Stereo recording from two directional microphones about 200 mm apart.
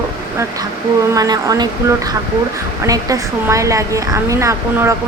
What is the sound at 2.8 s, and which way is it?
Speech, 15° right (ahead or behind).